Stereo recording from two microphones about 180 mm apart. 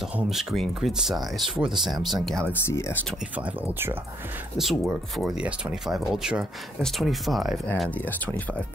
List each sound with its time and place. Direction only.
0.1 s speech: centre (ahead or behind)
2.6 s speech: 15° left (ahead or behind)
3.3 s speech: 10° right (ahead or behind); by 8.6 s 10° left (ahead or behind)